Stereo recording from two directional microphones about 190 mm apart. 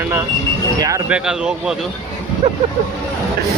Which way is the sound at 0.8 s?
15° right (ahead or behind).